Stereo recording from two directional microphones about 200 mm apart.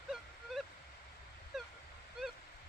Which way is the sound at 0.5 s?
Centre (ahead or behind).